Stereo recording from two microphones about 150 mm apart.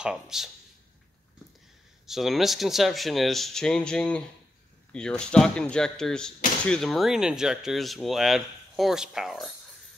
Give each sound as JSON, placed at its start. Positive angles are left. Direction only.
{"t": 0.0, "sound": "speech", "side_deg": -5}
{"t": 2.0, "sound": "speech", "side_deg": 0}